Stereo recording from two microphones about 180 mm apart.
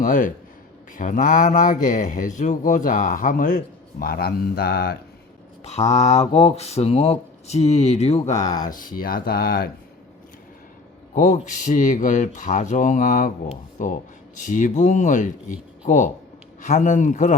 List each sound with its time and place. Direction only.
0.0 s speech: 45° left (ahead or behind)
4.0 s speech: 60° left (ahead or behind)
5.6 s speech: 35° left (ahead or behind)
8.4 s speech: 20° left (ahead or behind)
8.6 s speech: 50° left (ahead or behind)
11.1 s speech: 45° left (ahead or behind)